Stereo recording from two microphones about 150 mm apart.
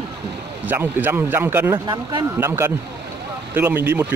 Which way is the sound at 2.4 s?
15° right (ahead or behind).